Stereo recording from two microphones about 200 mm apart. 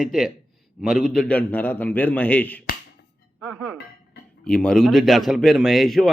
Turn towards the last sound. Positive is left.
turn(degrees=0)  # may be behind; listen again after turning